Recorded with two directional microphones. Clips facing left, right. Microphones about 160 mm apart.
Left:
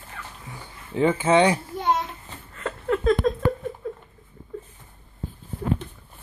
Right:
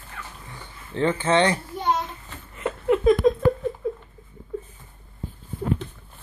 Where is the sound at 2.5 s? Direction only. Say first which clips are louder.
Right 4 dB; 15° right (ahead or behind).